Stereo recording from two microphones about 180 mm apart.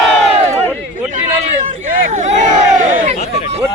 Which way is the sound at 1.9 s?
50° right (ahead or behind).